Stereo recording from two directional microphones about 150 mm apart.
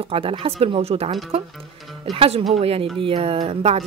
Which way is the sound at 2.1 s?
40° right (ahead or behind).